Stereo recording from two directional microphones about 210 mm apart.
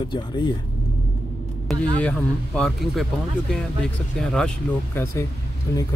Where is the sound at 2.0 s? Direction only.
5° left (ahead or behind).